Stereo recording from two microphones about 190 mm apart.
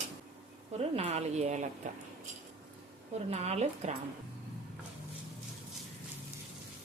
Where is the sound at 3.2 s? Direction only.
35° right (ahead or behind).